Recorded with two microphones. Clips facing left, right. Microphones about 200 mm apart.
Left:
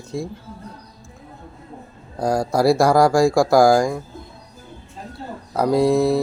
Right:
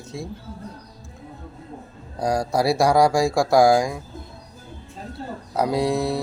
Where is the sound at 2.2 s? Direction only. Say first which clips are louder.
Left 3 dB; centre (ahead or behind).